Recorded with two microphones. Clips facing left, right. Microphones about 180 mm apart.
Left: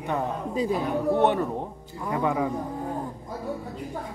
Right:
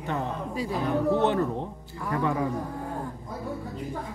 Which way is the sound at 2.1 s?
20° left (ahead or behind).